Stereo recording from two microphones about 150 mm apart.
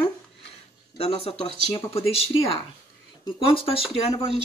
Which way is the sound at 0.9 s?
40° left (ahead or behind).